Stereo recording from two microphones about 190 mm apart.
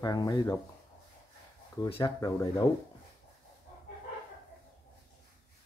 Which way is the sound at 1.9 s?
25° left (ahead or behind).